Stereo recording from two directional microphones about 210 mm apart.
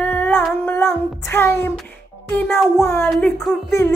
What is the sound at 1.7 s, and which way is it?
Music, 10° left (ahead or behind).